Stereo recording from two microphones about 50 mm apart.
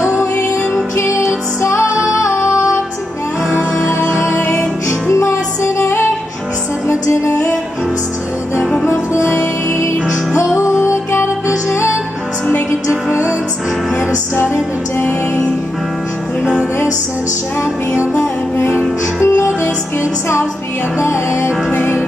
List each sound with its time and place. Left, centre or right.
0.9 s music: left
3.5 s music: left
5.2 s music: left
9.1 s music: left
10.3 s music: left
14.3 s music: left
18.7 s music: right
19.3 s music: left
21.0 s music: left